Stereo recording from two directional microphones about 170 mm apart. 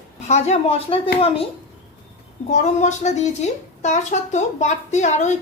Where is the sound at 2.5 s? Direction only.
45° left (ahead or behind).